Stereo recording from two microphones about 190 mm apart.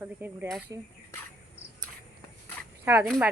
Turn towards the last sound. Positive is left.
turn(degrees=-10)  # may be behind; listen again after turning